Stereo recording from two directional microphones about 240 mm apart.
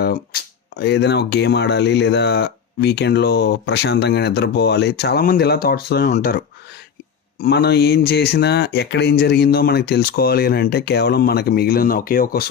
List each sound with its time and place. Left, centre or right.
0.0 s speech: left
7.4 s speech: left